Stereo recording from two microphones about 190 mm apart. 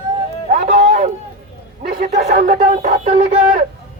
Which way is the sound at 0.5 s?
40° right (ahead or behind).